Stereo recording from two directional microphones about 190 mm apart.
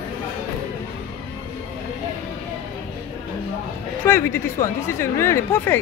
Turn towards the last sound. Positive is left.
turn(degrees=15)  # may be behind; listen again after turning